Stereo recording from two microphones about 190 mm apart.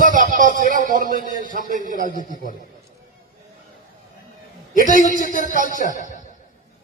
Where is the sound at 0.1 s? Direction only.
45° right (ahead or behind).